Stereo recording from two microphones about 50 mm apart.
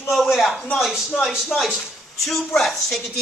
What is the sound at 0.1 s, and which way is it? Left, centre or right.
Speech, centre.